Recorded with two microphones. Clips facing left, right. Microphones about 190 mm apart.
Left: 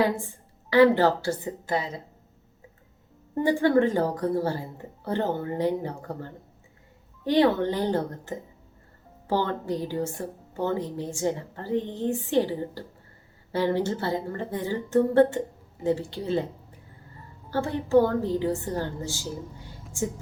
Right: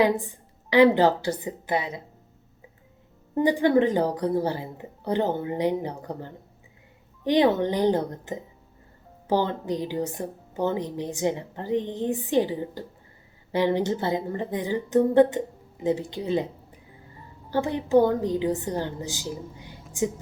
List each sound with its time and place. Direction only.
0.7 s speech: 15° right (ahead or behind)
3.3 s speech: 20° right (ahead or behind)
17.5 s speech: 15° right (ahead or behind)